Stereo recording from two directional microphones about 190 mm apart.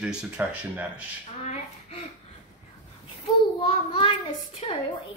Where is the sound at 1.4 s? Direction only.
35° left (ahead or behind).